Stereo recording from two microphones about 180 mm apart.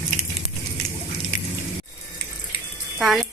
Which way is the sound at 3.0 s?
Centre (ahead or behind).